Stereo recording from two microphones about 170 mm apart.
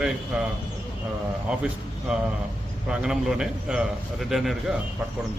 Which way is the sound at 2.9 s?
5° right (ahead or behind).